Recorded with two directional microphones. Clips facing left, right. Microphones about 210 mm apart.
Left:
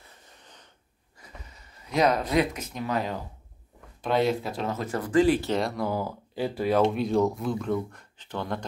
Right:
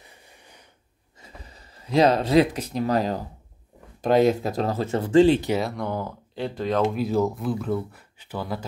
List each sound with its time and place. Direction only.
0.0 s wheeze: 10° right (ahead or behind)
1.2 s speech: 30° right (ahead or behind)
5.5 s speech: centre (ahead or behind)
6.9 s speech: 5° right (ahead or behind)